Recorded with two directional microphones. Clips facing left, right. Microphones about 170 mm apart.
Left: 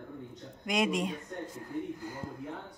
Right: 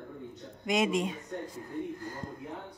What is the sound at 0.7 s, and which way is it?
Speech, centre (ahead or behind).